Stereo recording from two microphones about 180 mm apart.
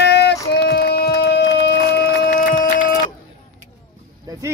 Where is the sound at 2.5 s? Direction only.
50° left (ahead or behind).